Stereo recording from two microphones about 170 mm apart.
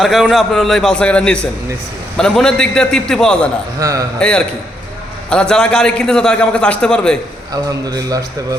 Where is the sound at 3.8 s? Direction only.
20° right (ahead or behind).